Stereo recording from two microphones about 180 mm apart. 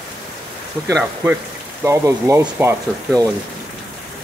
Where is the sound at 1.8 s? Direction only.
15° right (ahead or behind).